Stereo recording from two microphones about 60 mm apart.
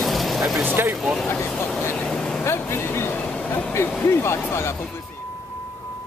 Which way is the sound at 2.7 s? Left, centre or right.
Left.